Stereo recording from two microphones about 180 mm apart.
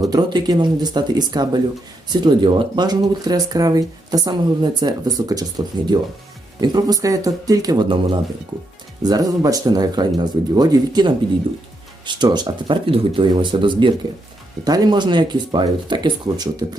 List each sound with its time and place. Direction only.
0.0 s speech: 20° right (ahead or behind)